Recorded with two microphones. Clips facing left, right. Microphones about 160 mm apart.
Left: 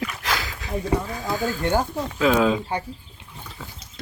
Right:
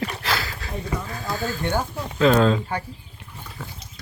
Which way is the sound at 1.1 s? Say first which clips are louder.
Left 2 dB; 10° left (ahead or behind).